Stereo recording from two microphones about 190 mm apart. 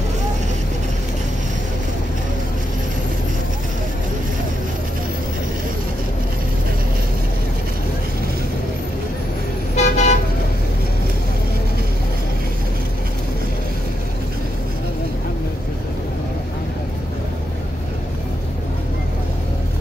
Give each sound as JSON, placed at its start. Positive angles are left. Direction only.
{"t": 9.8, "sound": "vehicle", "side_deg": 35}